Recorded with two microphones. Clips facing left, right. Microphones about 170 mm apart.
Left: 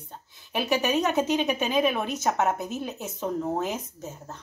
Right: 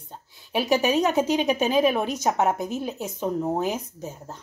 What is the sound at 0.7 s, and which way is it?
Speech, 35° right (ahead or behind).